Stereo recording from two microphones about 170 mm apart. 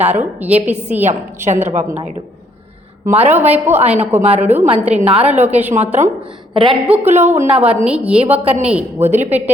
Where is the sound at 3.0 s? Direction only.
10° right (ahead or behind).